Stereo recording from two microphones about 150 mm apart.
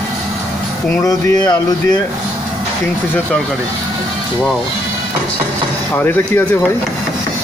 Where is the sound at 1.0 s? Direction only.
20° left (ahead or behind).